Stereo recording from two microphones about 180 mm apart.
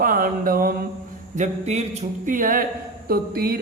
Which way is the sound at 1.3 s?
40° right (ahead or behind).